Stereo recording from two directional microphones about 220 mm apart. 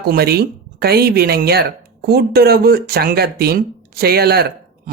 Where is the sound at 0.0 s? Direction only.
45° right (ahead or behind).